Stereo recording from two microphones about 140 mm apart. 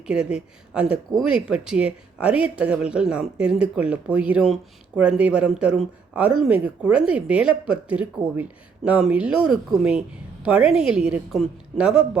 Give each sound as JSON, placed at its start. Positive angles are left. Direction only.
{"t": 0.1, "sound": "speech", "side_deg": -5}